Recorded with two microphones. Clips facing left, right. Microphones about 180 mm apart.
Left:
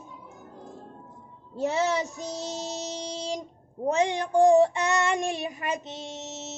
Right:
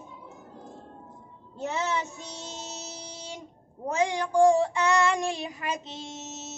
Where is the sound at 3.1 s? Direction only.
35° left (ahead or behind).